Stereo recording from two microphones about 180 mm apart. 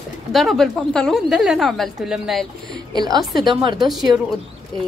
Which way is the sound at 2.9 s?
20° right (ahead or behind).